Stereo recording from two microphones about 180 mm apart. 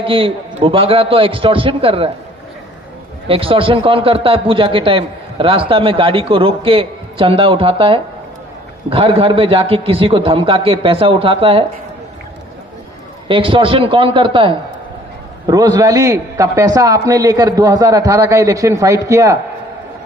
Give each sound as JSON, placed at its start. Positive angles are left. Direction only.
{"t": 0.0, "sound": "a man's voice", "side_deg": -30}
{"t": 3.2, "sound": "a man's voice", "side_deg": -30}
{"t": 13.2, "sound": "a man's voice", "side_deg": -30}